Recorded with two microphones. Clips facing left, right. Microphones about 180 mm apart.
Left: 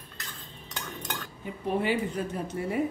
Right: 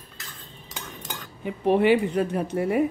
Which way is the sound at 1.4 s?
70° right (ahead or behind).